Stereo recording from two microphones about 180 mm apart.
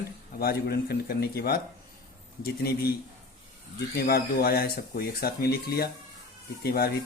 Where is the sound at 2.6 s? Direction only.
60° left (ahead or behind).